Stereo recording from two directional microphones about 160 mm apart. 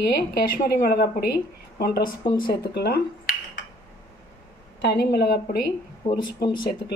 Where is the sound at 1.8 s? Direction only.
75° left (ahead or behind).